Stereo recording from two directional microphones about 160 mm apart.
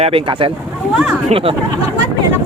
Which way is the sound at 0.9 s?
5° right (ahead or behind).